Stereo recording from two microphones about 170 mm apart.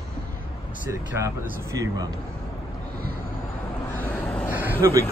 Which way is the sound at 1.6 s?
20° right (ahead or behind).